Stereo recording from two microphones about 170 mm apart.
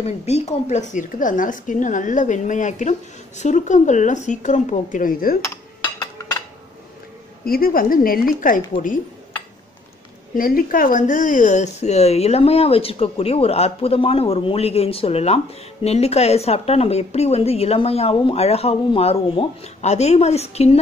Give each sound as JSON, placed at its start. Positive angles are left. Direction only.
{"t": 0.0, "sound": "a woman's voice", "side_deg": 40}
{"t": 7.4, "sound": "a woman's voice", "side_deg": 60}
{"t": 10.3, "sound": "speech", "side_deg": 55}